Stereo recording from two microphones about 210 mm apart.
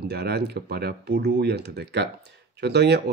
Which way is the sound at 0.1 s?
50° right (ahead or behind).